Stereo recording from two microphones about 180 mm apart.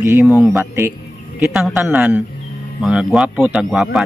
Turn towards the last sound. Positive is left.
turn(degrees=-5)  # may be behind; listen again after turning